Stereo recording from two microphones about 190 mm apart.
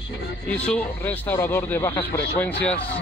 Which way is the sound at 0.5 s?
5° left (ahead or behind).